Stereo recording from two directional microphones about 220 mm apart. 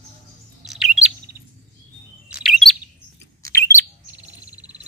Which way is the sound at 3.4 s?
15° left (ahead or behind).